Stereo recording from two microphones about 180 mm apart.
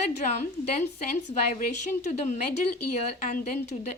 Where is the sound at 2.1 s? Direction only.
40° left (ahead or behind).